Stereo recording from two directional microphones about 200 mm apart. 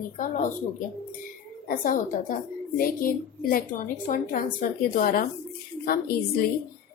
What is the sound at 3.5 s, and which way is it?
A woman's voice, 45° left (ahead or behind).